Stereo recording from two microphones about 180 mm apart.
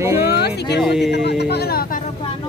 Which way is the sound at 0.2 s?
65° left (ahead or behind).